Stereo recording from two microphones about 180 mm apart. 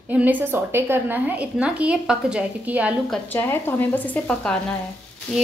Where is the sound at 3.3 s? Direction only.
10° left (ahead or behind).